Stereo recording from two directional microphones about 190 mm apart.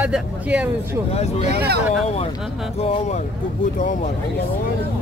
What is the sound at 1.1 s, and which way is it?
Speech, 35° left (ahead or behind).